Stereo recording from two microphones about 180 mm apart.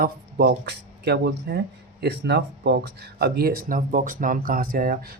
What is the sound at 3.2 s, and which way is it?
Speech, 55° right (ahead or behind).